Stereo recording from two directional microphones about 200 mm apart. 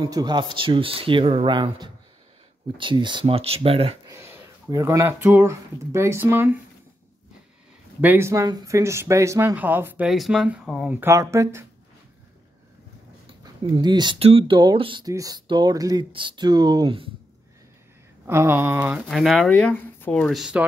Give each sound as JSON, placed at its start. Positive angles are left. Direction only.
{"t": 0.0, "sound": "speech", "side_deg": -20}
{"t": 4.0, "sound": "speech", "side_deg": -15}
{"t": 8.0, "sound": "speech", "side_deg": -10}
{"t": 13.3, "sound": "speech", "side_deg": -20}
{"t": 18.2, "sound": "speech", "side_deg": -10}